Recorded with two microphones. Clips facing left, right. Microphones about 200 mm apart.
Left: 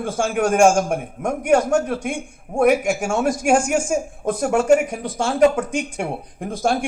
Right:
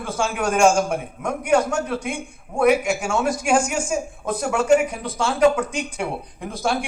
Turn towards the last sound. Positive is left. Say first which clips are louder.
# left 3 dB
turn(degrees=50)  # may be behind; listen again after turning